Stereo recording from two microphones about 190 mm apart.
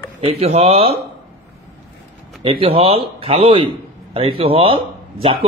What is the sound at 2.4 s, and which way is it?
A man's voice, 30° right (ahead or behind).